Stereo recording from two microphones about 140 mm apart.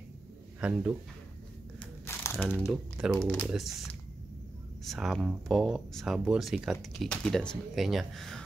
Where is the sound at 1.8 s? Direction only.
20° left (ahead or behind).